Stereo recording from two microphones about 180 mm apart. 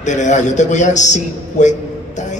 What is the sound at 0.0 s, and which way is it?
A man's voice, 40° left (ahead or behind).